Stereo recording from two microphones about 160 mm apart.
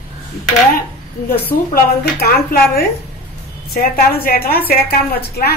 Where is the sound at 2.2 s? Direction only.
70° left (ahead or behind).